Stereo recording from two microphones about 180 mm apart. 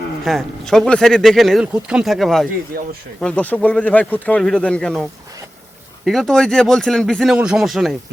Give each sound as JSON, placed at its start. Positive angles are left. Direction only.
{"t": 0.3, "sound": "speech", "side_deg": 0}
{"t": 2.7, "sound": "speech", "side_deg": -55}
{"t": 3.2, "sound": "speech", "side_deg": 5}
{"t": 6.1, "sound": "speech", "side_deg": 0}